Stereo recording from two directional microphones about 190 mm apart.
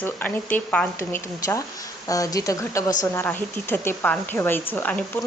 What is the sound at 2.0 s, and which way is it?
Speech, 20° left (ahead or behind).